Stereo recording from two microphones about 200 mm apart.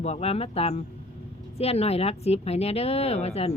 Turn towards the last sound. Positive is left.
turn(degrees=30)  # may be behind; listen again after turning